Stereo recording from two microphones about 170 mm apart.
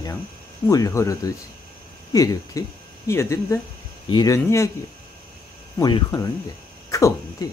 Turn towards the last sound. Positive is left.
turn(degrees=20)  # may be behind; listen again after turning